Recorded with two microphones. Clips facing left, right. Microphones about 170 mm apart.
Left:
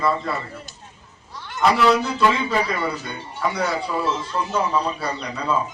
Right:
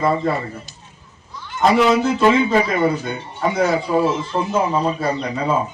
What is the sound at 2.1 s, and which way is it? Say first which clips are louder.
A man's voice: right 5 dB; 45° right (ahead or behind).